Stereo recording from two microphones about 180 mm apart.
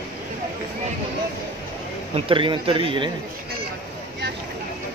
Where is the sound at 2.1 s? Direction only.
30° right (ahead or behind).